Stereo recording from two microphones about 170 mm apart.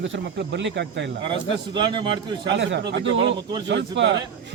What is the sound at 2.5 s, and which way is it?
A man's voice, 90° right.